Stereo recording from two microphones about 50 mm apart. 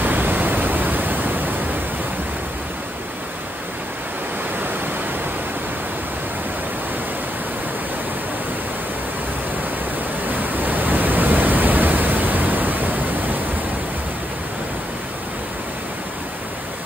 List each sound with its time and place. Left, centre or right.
0.0 s pink noise: right
10.2 s pink noise: right